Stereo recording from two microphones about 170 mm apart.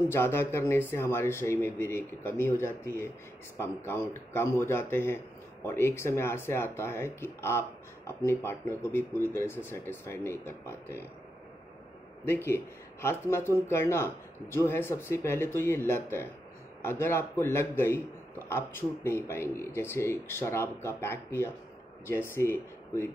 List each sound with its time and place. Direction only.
0.1 s a man's voice: 15° left (ahead or behind)
12.3 s a man's voice: 15° left (ahead or behind)